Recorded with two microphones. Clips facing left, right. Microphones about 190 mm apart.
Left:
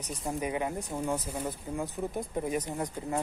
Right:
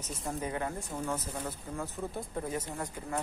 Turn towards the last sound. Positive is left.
turn(degrees=15)  # may be behind; listen again after turning